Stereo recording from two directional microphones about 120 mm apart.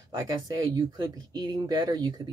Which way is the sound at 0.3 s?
35° right (ahead or behind).